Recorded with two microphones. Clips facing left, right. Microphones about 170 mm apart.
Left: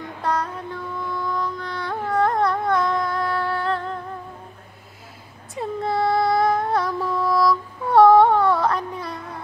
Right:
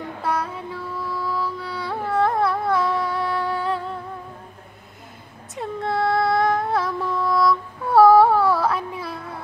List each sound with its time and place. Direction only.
0.2 s music: 5° right (ahead or behind)
5.5 s music: centre (ahead or behind)